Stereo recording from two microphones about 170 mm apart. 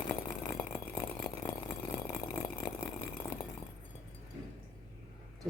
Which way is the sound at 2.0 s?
20° left (ahead or behind).